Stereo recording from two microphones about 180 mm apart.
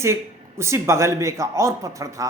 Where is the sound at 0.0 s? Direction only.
15° right (ahead or behind).